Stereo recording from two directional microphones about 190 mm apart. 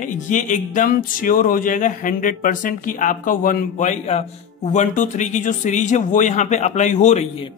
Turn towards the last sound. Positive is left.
turn(degrees=40)  # may be behind; listen again after turning